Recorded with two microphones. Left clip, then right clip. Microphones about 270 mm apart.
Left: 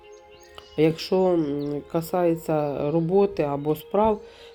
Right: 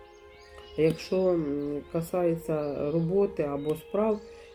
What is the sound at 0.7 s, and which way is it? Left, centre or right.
Speech, left.